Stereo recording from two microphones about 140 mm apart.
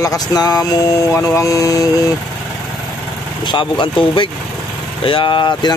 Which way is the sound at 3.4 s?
35° left (ahead or behind).